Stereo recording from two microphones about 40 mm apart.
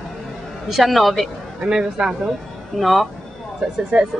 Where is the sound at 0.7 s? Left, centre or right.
Centre.